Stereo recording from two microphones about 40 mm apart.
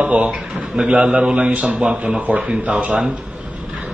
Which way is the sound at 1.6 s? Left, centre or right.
Centre.